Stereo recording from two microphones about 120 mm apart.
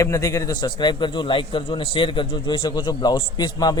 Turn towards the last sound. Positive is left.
turn(degrees=35)  # may be behind; listen again after turning